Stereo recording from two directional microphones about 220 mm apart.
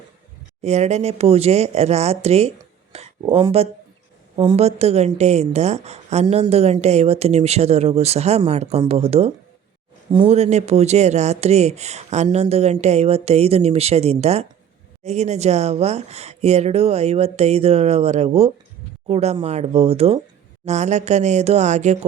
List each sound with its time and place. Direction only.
0.6 s a woman's voice: 30° right (ahead or behind)